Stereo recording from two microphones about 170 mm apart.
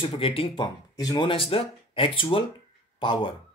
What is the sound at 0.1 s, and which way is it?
Speech, 30° left (ahead or behind).